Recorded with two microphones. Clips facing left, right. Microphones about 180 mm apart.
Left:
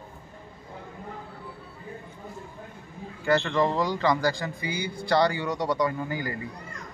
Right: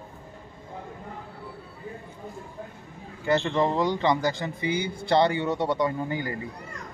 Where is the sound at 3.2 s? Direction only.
20° right (ahead or behind).